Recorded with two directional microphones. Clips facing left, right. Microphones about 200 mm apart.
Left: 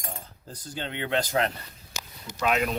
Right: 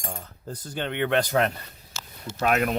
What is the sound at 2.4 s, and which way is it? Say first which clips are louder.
Speech: right 2 dB; 50° right (ahead or behind).